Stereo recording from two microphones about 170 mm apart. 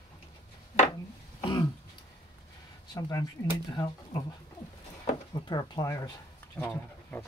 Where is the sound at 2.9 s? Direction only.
25° left (ahead or behind).